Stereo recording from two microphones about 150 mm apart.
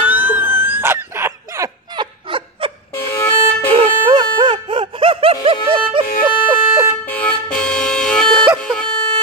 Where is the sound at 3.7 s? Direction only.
35° right (ahead or behind).